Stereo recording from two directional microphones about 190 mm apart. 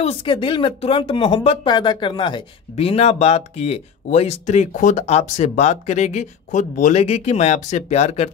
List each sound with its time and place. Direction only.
0.0 s speech: 30° left (ahead or behind)